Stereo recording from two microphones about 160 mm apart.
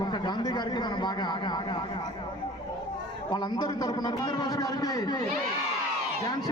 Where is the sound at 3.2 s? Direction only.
25° left (ahead or behind).